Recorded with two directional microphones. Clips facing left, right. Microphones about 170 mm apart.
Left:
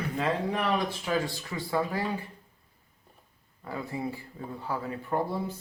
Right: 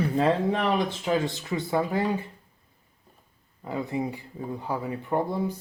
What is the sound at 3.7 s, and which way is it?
Speech, 20° right (ahead or behind).